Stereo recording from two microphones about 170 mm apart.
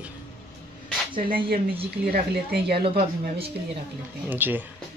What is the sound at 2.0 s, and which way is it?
Speech, 65° right (ahead or behind).